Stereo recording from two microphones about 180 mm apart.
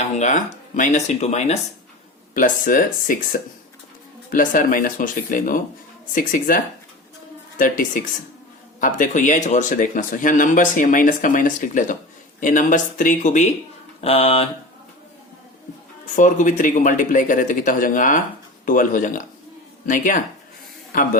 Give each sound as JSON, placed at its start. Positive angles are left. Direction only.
{"t": 0.2, "sound": "speech", "side_deg": 45}
{"t": 2.3, "sound": "speech", "side_deg": 50}
{"t": 16.1, "sound": "a man's voice", "side_deg": 45}